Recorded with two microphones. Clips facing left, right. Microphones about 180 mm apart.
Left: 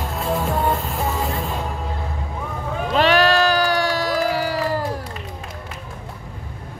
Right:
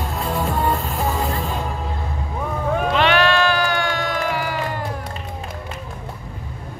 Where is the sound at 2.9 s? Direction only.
40° left (ahead or behind).